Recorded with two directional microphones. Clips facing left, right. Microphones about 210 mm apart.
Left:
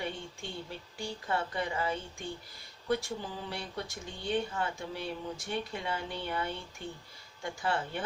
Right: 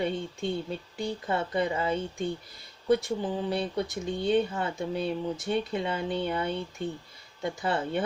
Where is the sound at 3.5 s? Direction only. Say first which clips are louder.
Right 10 dB; 20° right (ahead or behind).